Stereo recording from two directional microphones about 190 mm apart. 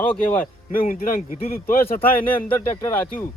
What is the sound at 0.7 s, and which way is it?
Speech, 50° left (ahead or behind).